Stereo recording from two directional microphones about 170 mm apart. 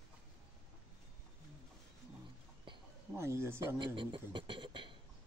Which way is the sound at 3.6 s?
30° right (ahead or behind).